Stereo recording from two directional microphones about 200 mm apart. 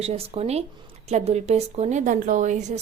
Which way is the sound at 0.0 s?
30° right (ahead or behind).